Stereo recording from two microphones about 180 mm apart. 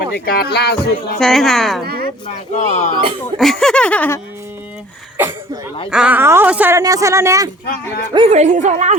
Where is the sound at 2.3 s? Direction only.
40° left (ahead or behind).